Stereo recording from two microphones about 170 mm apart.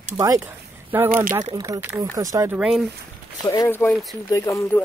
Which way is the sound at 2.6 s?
Centre (ahead or behind).